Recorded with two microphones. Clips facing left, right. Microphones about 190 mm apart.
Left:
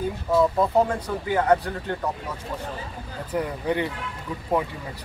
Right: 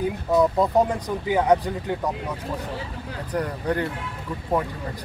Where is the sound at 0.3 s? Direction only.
20° right (ahead or behind).